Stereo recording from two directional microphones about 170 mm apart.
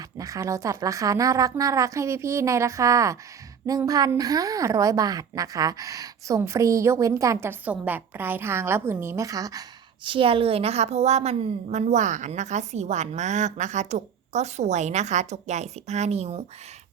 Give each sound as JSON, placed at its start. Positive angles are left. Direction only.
{"t": 0.2, "sound": "a woman's voice", "side_deg": -20}